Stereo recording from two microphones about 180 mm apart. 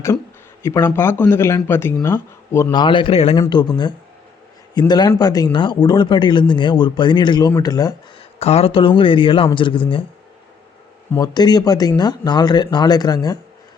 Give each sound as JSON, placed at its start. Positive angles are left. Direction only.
{"t": 0.6, "sound": "speech", "side_deg": 15}
{"t": 8.4, "sound": "speech", "side_deg": 35}
{"t": 11.1, "sound": "speech", "side_deg": 20}